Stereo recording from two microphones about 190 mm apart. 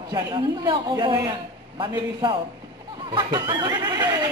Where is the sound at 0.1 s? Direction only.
25° right (ahead or behind).